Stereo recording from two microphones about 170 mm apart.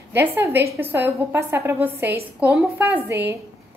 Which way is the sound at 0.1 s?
10° right (ahead or behind).